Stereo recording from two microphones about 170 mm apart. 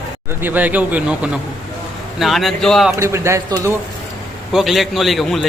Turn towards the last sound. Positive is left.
turn(degrees=0)  # may be behind; listen again after turning